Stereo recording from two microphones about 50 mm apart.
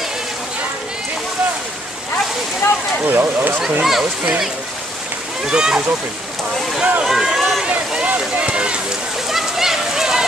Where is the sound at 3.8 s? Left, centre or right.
Centre.